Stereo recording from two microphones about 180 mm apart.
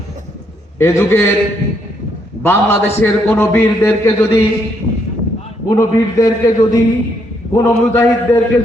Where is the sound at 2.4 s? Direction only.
15° left (ahead or behind).